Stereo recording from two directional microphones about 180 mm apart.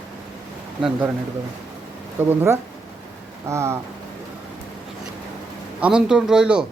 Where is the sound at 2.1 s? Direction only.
10° right (ahead or behind).